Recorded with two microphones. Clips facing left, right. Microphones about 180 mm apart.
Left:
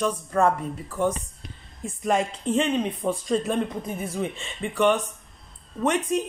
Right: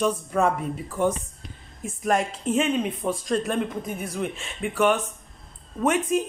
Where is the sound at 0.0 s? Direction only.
10° right (ahead or behind).